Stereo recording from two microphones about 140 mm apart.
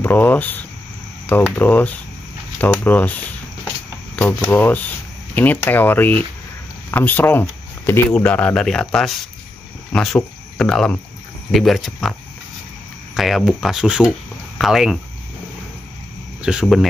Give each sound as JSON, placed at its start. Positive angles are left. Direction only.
{"t": 0.0, "sound": "speech", "side_deg": 15}
{"t": 4.2, "sound": "speech", "side_deg": 15}
{"t": 13.1, "sound": "speech", "side_deg": 0}
{"t": 16.4, "sound": "speech", "side_deg": -5}